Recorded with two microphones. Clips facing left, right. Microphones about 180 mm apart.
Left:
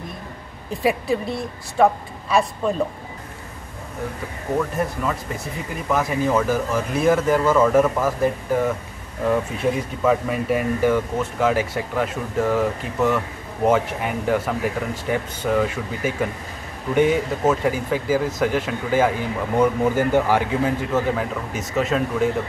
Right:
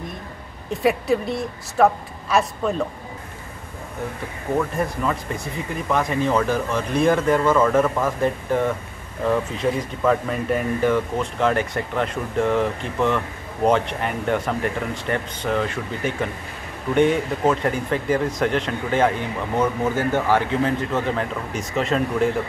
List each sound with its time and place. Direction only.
0.8 s speech: centre (ahead or behind)
4.6 s speech: centre (ahead or behind)